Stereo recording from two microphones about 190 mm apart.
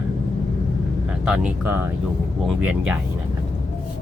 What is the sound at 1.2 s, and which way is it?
Speech, 5° right (ahead or behind).